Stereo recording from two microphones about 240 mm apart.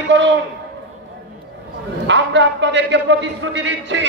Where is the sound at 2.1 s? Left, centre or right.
Right.